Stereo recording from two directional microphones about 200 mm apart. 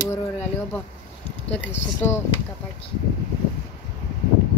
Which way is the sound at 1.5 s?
10° left (ahead or behind).